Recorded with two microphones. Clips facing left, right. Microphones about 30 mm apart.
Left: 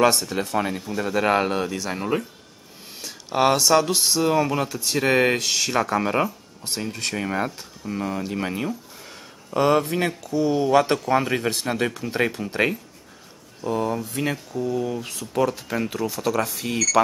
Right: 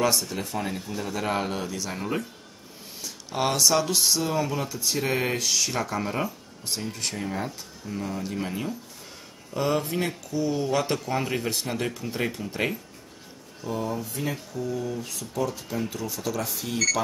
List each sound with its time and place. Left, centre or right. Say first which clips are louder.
0.0 s speech: left 6 dB; left
0.7 s speech: left 5 dB; left
4.3 s speech: left 6 dB; left
9.5 s speech: left 6 dB; left
10.7 s speech: left 7 dB; left
13.7 s speech: left 6 dB; left
14.0 s speech: left 5 dB; left
14.3 s speech: left 5 dB; left
14.7 s speech: left 4 dB; left
16.6 s speech: left 4 dB; left